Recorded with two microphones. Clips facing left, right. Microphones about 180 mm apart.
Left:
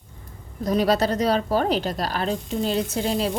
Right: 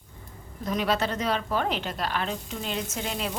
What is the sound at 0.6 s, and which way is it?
A woman's voice, 40° left (ahead or behind).